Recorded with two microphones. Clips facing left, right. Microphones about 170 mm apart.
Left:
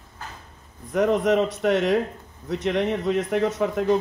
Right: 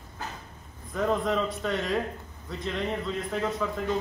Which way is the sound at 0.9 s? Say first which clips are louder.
Left 7 dB; 80° left.